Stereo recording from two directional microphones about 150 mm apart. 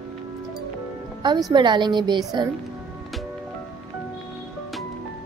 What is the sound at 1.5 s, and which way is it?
Speech, 30° right (ahead or behind).